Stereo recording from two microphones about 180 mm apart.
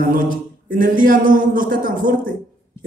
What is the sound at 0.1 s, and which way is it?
A woman's voice, 50° right (ahead or behind).